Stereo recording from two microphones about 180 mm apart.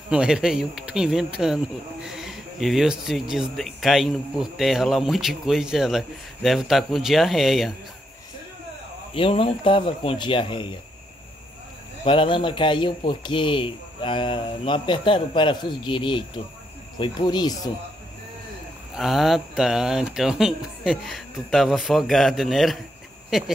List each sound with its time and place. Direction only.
0.1 s speech: 5° right (ahead or behind)
9.1 s speech: 30° left (ahead or behind)
12.0 s speech: 30° left (ahead or behind)
18.9 s speech: centre (ahead or behind)